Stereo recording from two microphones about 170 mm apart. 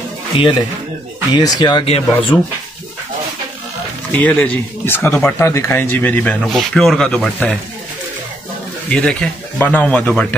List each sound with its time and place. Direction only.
1.3 s speech: 25° left (ahead or behind)
4.1 s speech: 10° left (ahead or behind)
8.8 s speech: 5° left (ahead or behind)